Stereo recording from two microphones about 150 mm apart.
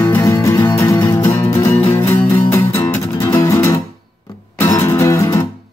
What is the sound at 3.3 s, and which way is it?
Music, 20° left (ahead or behind).